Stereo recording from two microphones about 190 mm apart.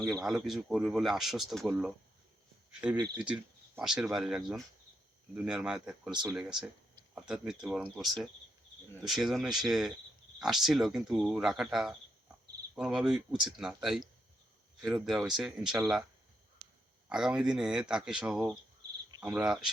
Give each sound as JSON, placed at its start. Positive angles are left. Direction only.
{"t": 0.3, "sound": "speech", "side_deg": 0}
{"t": 6.1, "sound": "speech", "side_deg": -25}
{"t": 6.3, "sound": "speech", "side_deg": -5}
{"t": 14.8, "sound": "speech", "side_deg": 0}
{"t": 17.1, "sound": "speech", "side_deg": -5}
{"t": 19.2, "sound": "cricket", "side_deg": -5}